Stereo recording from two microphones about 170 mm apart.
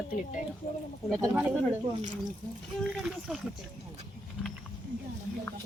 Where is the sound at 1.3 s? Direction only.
5° right (ahead or behind).